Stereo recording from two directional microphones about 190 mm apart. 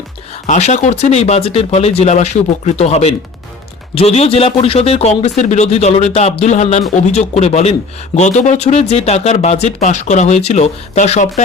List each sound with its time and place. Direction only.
0.4 s speech: 40° left (ahead or behind)